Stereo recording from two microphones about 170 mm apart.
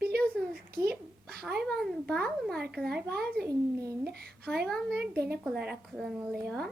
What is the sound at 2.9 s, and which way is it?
Speech, 70° right (ahead or behind).